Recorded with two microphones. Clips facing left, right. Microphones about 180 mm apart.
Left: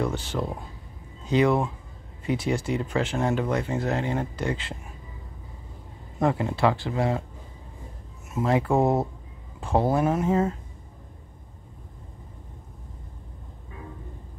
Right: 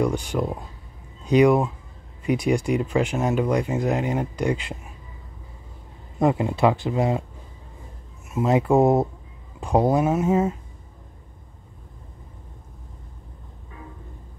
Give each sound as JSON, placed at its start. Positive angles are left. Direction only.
{"t": 0.0, "sound": "speech", "side_deg": -15}
{"t": 6.1, "sound": "speech", "side_deg": -20}
{"t": 8.5, "sound": "speech", "side_deg": -20}